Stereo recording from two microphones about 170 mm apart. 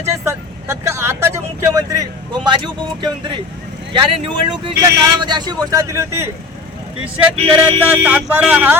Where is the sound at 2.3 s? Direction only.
30° right (ahead or behind).